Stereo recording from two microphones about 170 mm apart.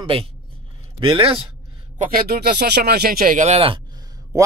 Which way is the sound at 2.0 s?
60° right (ahead or behind).